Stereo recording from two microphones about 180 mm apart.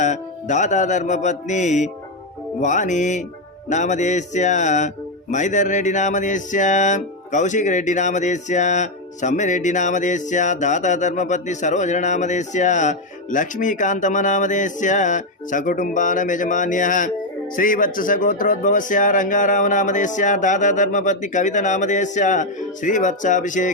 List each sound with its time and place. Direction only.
0.0 s music: 40° left (ahead or behind)
3.7 s a man's voice: 40° left (ahead or behind)
5.3 s music: 45° left (ahead or behind)